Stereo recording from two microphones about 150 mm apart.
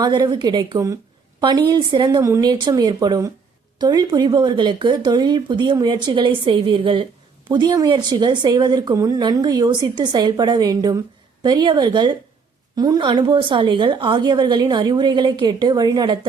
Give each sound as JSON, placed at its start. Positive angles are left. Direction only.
{"t": 0.0, "sound": "a woman's voice", "side_deg": -30}